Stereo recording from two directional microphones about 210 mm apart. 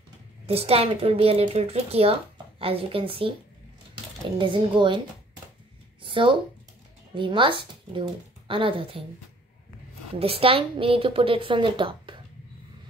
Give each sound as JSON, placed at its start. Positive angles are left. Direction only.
{"t": 0.5, "sound": "a woman's voice", "side_deg": -30}
{"t": 4.4, "sound": "a woman's voice", "side_deg": -25}
{"t": 6.0, "sound": "a sound", "side_deg": -25}
{"t": 7.2, "sound": "a woman's voice", "side_deg": -25}
{"t": 10.1, "sound": "a woman's voice", "side_deg": -25}